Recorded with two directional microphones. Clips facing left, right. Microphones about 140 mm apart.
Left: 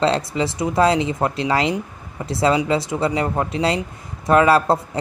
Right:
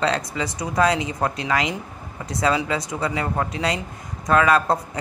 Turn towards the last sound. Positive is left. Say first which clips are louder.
# left 3 dB
turn(degrees=30)  # may be behind; listen again after turning